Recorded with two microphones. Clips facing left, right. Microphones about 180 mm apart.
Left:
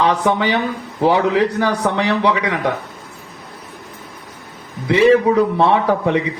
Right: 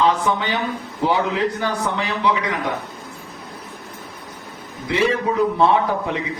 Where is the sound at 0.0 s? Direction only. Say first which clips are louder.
Left 3 dB; 70° left (ahead or behind).